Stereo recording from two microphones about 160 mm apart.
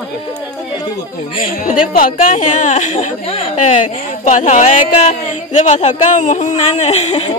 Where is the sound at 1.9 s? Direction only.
60° left (ahead or behind); by 7.3 s 40° left (ahead or behind).